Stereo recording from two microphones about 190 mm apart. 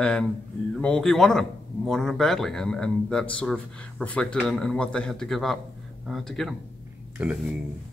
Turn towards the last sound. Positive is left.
turn(degrees=-5)  # may be behind; listen again after turning